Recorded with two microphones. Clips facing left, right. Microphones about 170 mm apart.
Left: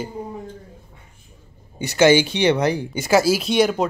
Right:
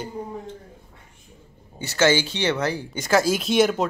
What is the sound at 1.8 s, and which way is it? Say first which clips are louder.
Speech: left 5 dB; 15° left (ahead or behind).